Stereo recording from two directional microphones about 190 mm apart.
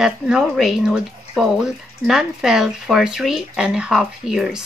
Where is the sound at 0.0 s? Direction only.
Centre (ahead or behind).